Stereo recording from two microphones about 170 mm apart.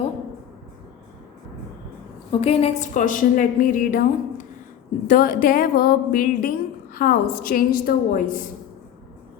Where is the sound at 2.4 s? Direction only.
35° left (ahead or behind); by 4.0 s 55° left (ahead or behind).